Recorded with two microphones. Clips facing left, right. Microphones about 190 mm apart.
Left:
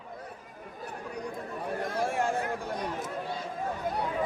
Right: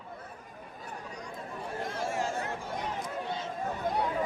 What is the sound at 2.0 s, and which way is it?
Chatter, 60° left (ahead or behind).